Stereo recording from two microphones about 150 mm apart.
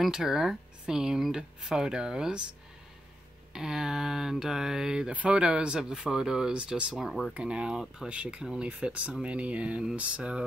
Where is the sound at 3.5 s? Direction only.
5° right (ahead or behind).